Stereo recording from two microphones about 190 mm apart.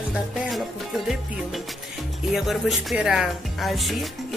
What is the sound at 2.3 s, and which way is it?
Speech, centre (ahead or behind).